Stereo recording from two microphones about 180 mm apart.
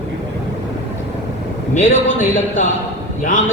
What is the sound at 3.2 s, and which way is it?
Speech, 45° left (ahead or behind).